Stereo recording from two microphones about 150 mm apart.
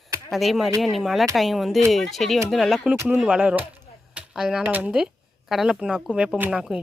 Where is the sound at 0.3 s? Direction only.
Centre (ahead or behind).